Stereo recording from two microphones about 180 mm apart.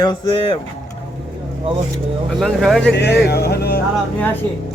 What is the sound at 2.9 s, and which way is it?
Speech, 70° left (ahead or behind).